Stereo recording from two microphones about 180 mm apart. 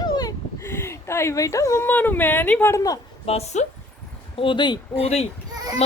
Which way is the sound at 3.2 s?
35° left (ahead or behind).